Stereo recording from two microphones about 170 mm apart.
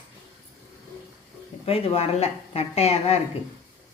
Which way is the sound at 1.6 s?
35° left (ahead or behind).